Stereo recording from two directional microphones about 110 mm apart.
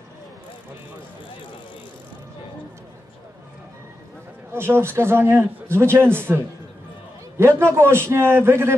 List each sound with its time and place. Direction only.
4.6 s a man's voice: 20° right (ahead or behind)